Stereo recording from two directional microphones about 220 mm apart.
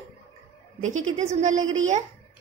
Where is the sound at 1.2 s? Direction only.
30° right (ahead or behind).